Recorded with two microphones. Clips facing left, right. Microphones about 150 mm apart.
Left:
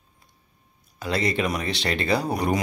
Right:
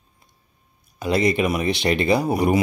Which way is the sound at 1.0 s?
15° right (ahead or behind).